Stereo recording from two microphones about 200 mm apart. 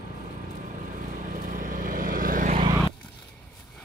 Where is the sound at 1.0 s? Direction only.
40° right (ahead or behind).